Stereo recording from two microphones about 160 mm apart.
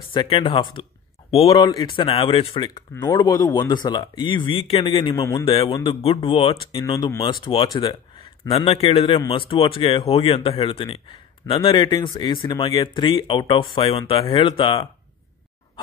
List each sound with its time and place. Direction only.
0.1 s speech: 30° left (ahead or behind)
2.9 s speech: 20° left (ahead or behind)
5.1 s speech: 20° left (ahead or behind)
5.4 s speech: 35° left (ahead or behind)
6.8 s speech: 20° left (ahead or behind)